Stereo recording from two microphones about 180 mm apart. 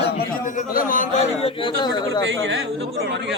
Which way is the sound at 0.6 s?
50° left (ahead or behind).